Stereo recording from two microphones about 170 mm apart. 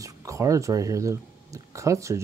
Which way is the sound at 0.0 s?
20° right (ahead or behind).